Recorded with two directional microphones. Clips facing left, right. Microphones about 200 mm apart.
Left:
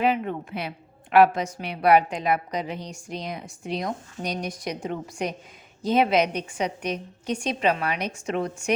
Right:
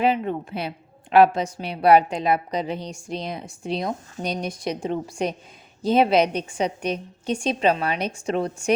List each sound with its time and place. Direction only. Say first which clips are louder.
0.0 s a woman's voice: right 2 dB; 30° right (ahead or behind)